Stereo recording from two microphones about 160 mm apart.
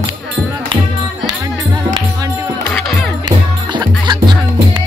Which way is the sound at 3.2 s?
25° right (ahead or behind).